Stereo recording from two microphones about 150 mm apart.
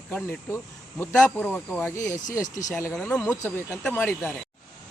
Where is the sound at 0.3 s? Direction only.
15° left (ahead or behind).